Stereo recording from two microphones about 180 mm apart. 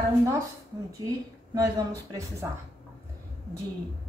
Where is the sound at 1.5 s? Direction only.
20° right (ahead or behind).